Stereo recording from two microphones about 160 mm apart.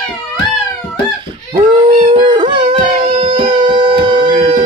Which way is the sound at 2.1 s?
30° right (ahead or behind).